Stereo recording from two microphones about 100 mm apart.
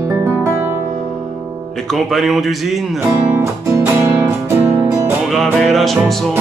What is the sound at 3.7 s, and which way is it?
Music, 25° right (ahead or behind).